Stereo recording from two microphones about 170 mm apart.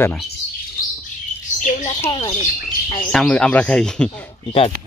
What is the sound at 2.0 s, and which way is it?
Speech, 25° left (ahead or behind).